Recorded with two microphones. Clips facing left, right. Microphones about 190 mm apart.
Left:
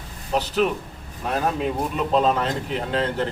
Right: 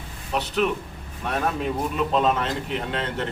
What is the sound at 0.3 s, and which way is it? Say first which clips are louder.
Speech: left 2 dB; 35° left (ahead or behind).